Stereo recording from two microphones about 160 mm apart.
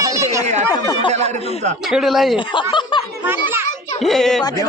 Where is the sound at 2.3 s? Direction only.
30° left (ahead or behind).